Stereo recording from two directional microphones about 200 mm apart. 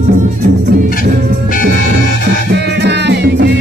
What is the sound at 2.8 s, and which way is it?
Music, 60° right (ahead or behind).